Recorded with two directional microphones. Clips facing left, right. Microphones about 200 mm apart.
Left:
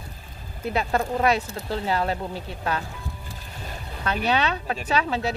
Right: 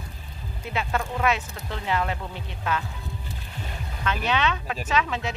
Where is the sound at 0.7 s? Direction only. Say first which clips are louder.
Left 4 dB; 35° left (ahead or behind).